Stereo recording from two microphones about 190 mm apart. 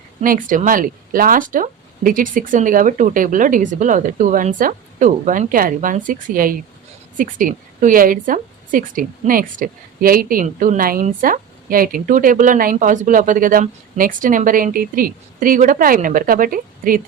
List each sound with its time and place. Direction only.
0.2 s a woman's voice: 45° right (ahead or behind)